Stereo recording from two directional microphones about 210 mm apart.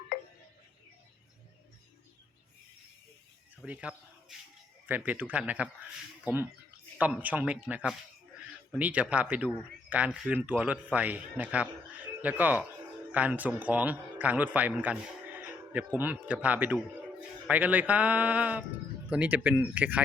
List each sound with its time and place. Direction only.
3.6 s a man's voice: 5° right (ahead or behind)